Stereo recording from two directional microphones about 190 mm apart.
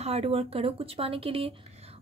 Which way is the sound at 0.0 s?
30° right (ahead or behind).